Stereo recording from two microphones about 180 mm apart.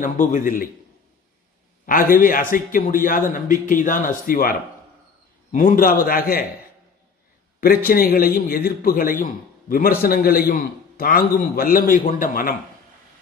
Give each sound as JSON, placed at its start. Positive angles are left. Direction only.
{"t": 0.0, "sound": "a man's voice", "side_deg": 45}
{"t": 1.9, "sound": "a man's voice", "side_deg": 50}
{"t": 7.6, "sound": "a man's voice", "side_deg": 55}